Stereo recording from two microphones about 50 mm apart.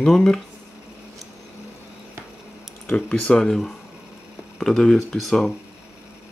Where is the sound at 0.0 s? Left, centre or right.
Centre.